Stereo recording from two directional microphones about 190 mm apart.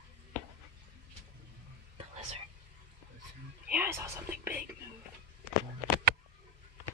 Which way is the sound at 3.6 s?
10° right (ahead or behind).